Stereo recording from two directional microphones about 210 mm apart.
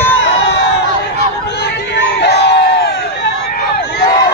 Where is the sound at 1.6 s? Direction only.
55° left (ahead or behind).